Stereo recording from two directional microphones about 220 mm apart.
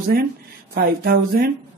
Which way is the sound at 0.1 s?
45° right (ahead or behind).